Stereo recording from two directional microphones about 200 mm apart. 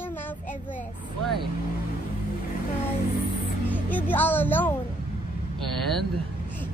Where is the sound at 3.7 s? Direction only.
10° left (ahead or behind).